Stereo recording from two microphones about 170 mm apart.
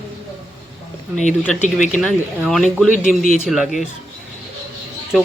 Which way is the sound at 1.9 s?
5° left (ahead or behind).